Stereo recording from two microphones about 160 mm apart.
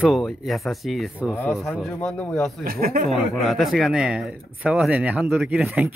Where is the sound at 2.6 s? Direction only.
70° right (ahead or behind).